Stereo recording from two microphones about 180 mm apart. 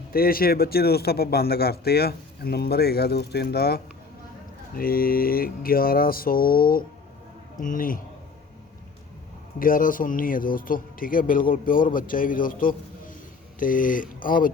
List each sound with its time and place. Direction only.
0.1 s a man's voice: 55° left (ahead or behind)
4.8 s a man's voice: 55° left (ahead or behind)
9.6 s speech: 50° left (ahead or behind)